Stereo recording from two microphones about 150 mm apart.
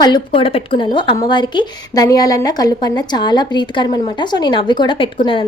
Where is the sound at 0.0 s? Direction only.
30° left (ahead or behind).